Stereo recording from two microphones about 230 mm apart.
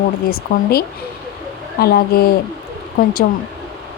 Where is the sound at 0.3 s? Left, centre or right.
Left.